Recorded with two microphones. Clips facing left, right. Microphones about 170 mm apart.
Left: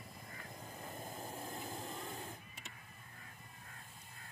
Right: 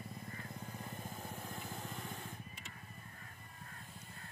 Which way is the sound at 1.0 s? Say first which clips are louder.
Left 1 dB; 45° left (ahead or behind).